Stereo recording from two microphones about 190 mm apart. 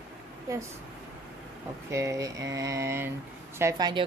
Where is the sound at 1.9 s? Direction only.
15° right (ahead or behind).